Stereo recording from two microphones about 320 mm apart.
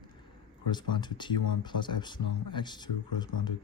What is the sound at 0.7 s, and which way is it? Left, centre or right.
Speech, centre.